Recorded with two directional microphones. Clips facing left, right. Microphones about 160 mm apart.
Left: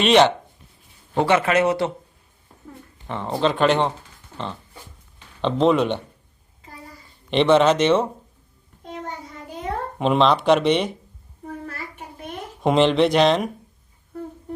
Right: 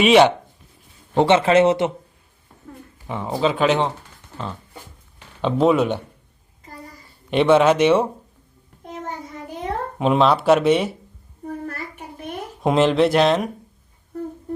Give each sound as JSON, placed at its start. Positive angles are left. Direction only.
{"t": 0.0, "sound": "speech", "side_deg": -5}
{"t": 1.1, "sound": "speech", "side_deg": -25}
{"t": 3.1, "sound": "speech", "side_deg": -10}
{"t": 5.4, "sound": "speech", "side_deg": -10}
{"t": 7.3, "sound": "speech", "side_deg": -10}
{"t": 10.0, "sound": "speech", "side_deg": -5}
{"t": 12.6, "sound": "speech", "side_deg": 0}